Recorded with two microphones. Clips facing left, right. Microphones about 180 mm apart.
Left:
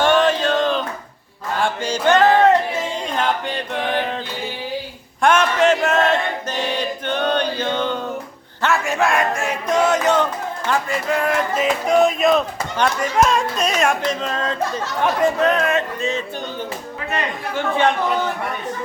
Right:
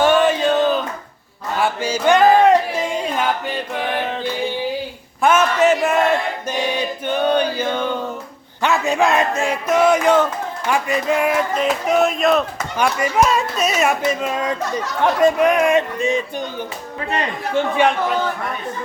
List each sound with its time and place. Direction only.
0.0 s male singing: 10° right (ahead or behind)
1.6 s a sound: 10° right (ahead or behind)
5.2 s chant: 5° right (ahead or behind)
8.6 s speech: 20° right (ahead or behind)
11.3 s speech: centre (ahead or behind)